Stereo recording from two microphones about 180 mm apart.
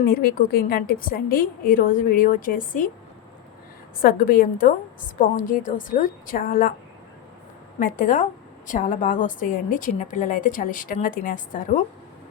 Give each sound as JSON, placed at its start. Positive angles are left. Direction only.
{"t": 0.0, "sound": "a woman's voice", "side_deg": 55}
{"t": 4.0, "sound": "a woman's voice", "side_deg": 55}
{"t": 7.8, "sound": "a woman's voice", "side_deg": 50}